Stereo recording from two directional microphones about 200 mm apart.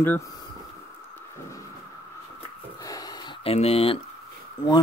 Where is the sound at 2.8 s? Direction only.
20° left (ahead or behind).